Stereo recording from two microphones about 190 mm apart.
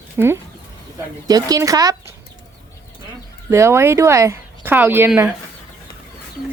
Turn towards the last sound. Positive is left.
turn(degrees=-10)  # may be behind; listen again after turning